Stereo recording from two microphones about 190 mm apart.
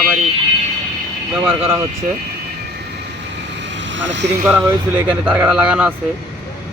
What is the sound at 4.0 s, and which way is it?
Speech, 70° right (ahead or behind).